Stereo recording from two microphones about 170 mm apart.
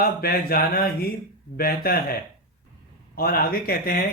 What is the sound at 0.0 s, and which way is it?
A man's voice, 60° left (ahead or behind).